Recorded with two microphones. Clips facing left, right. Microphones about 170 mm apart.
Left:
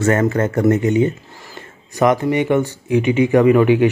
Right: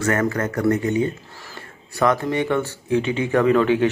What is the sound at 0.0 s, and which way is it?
Speech, 25° left (ahead or behind).